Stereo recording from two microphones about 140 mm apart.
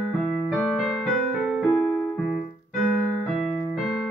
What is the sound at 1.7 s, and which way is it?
Keyboard, 20° left (ahead or behind).